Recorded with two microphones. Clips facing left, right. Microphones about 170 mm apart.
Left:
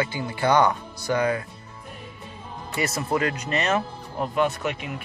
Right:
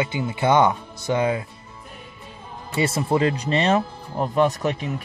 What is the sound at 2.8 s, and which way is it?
Speech, 30° right (ahead or behind).